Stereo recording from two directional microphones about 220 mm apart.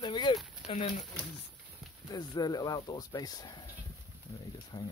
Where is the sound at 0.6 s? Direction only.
5° right (ahead or behind).